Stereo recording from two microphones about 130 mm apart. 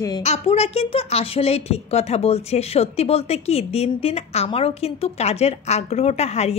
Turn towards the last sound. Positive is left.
turn(degrees=55)  # may be behind; listen again after turning